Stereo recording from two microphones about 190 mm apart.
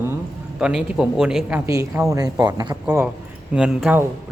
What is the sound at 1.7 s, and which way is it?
A woman's voice, 15° right (ahead or behind).